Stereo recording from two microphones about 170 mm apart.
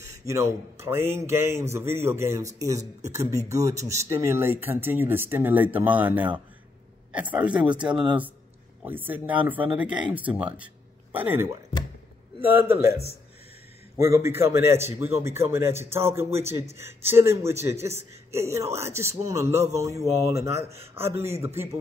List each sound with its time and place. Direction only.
0.0 s a man's voice: 20° right (ahead or behind)